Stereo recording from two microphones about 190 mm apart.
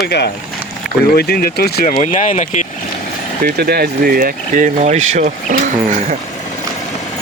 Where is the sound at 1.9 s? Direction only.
35° left (ahead or behind).